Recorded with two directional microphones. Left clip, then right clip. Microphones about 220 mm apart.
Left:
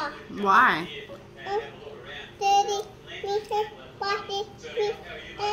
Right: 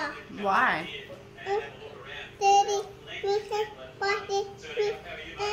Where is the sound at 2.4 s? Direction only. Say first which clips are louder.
Even; 15° right (ahead or behind).